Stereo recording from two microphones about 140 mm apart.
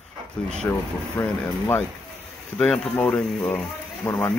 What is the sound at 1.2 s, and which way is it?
Speech, 15° left (ahead or behind).